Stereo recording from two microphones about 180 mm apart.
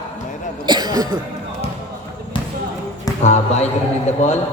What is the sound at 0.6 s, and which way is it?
Cough, 25° right (ahead or behind).